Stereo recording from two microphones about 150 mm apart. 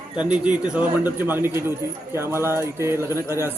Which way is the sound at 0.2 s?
5° right (ahead or behind).